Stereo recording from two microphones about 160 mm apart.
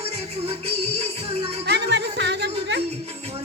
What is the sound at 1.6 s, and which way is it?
Music, 90° right.